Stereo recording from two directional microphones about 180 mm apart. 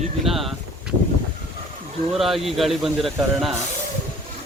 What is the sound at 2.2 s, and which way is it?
A man's voice, centre (ahead or behind).